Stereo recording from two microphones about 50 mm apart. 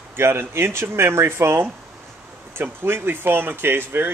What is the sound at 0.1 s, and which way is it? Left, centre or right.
Speech, right.